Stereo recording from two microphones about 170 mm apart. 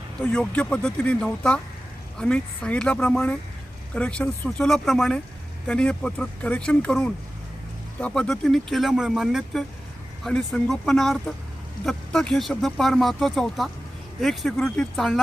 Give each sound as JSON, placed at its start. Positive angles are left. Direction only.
{"t": 0.2, "sound": "speech", "side_deg": 5}